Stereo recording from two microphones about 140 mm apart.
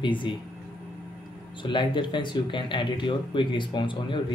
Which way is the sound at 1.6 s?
35° left (ahead or behind).